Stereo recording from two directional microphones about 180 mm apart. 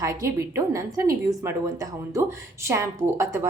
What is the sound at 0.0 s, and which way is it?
A woman's voice, 15° right (ahead or behind).